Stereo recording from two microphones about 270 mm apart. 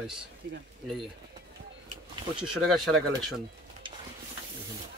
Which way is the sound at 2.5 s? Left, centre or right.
Centre.